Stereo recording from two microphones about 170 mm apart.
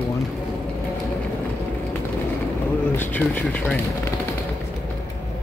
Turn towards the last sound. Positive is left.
turn(degrees=10)  # may be behind; listen again after turning